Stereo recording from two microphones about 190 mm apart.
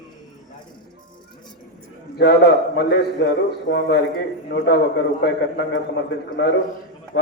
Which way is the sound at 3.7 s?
45° left (ahead or behind).